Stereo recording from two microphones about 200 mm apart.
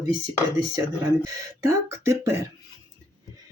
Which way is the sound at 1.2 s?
15° right (ahead or behind).